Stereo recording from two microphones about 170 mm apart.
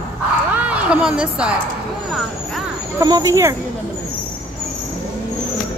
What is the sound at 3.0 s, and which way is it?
Speech, 20° right (ahead or behind).